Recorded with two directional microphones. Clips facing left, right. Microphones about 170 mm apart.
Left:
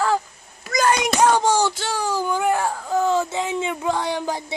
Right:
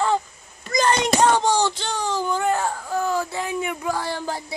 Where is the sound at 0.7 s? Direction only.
5° left (ahead or behind).